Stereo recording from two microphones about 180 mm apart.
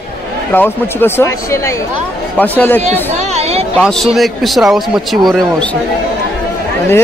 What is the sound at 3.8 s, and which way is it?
Speech, centre (ahead or behind).